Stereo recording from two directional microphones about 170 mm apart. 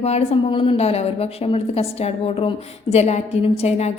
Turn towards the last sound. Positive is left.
turn(degrees=40)  # may be behind; listen again after turning